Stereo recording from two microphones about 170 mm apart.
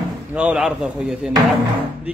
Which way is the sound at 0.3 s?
5° right (ahead or behind).